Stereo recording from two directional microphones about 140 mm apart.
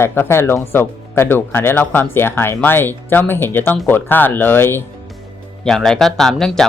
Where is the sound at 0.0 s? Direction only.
15° left (ahead or behind).